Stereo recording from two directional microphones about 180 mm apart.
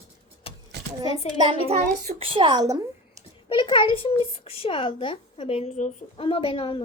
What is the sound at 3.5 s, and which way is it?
A child's voice, 25° left (ahead or behind).